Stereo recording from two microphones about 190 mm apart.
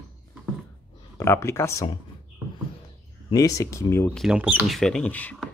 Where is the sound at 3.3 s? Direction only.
15° left (ahead or behind).